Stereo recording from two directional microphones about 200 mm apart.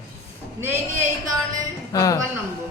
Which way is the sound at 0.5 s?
10° right (ahead or behind).